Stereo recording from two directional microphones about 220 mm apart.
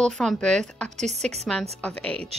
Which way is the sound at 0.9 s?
30° right (ahead or behind).